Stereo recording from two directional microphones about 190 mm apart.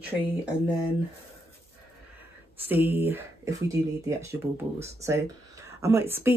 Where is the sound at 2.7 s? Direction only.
10° right (ahead or behind).